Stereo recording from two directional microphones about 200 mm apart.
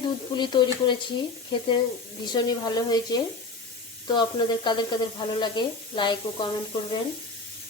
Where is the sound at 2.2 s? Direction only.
20° left (ahead or behind).